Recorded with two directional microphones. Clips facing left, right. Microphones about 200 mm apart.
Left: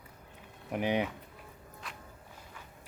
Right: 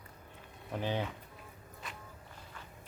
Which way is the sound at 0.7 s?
15° left (ahead or behind).